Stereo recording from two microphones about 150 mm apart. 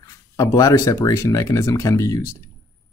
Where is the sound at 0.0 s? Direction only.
20° left (ahead or behind).